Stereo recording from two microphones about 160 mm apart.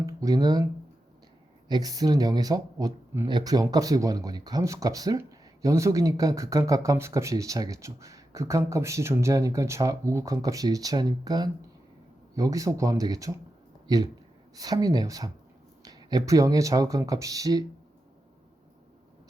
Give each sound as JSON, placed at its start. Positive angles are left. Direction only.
{"t": 0.0, "sound": "speech", "side_deg": -25}